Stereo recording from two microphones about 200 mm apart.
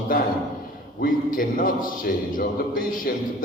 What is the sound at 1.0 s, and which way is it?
A man's voice, 45° left (ahead or behind).